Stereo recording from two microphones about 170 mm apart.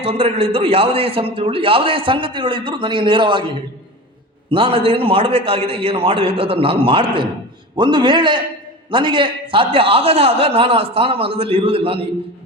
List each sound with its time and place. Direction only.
0.0 s a man's voice: 35° right (ahead or behind)
4.4 s a man's voice: 30° right (ahead or behind)